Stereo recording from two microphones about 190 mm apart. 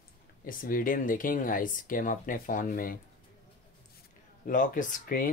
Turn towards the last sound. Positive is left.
turn(degrees=50)  # may be behind; listen again after turning